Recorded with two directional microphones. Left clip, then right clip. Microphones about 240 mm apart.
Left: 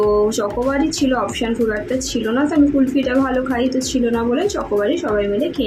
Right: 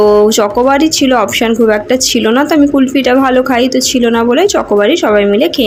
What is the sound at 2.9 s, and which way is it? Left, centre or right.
Speech, right.